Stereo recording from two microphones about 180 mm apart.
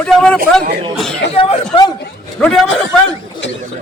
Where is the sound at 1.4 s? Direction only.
30° left (ahead or behind).